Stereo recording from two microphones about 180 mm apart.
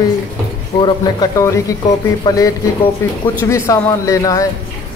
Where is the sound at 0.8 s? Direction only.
25° left (ahead or behind).